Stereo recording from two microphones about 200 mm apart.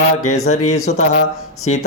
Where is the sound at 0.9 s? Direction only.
40° left (ahead or behind).